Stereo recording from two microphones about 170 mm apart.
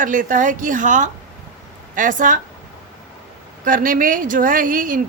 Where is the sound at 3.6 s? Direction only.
50° right (ahead or behind).